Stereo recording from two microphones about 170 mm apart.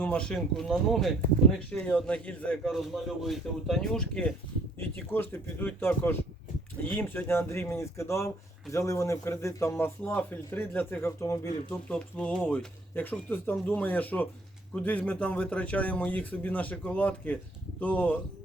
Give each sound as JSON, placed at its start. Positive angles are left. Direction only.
{"t": 0.0, "sound": "a man's voice", "side_deg": 5}
{"t": 11.7, "sound": "a man's voice", "side_deg": 5}